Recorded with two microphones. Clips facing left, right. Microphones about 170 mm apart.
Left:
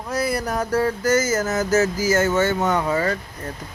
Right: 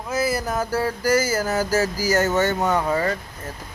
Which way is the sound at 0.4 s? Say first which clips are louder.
Even; centre (ahead or behind).